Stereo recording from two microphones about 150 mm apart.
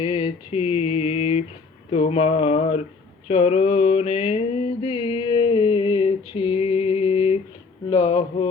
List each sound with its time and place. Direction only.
0.0 s mantra: 35° left (ahead or behind)